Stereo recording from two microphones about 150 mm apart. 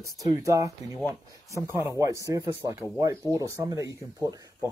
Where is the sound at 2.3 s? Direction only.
20° right (ahead or behind).